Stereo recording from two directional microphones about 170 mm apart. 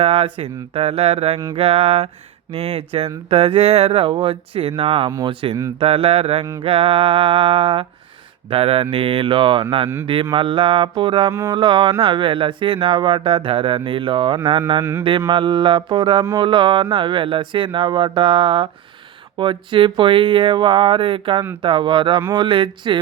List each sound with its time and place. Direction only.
0.0 s speech: 35° right (ahead or behind)